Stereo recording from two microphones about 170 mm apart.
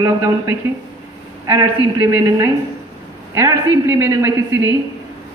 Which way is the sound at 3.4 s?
15° right (ahead or behind).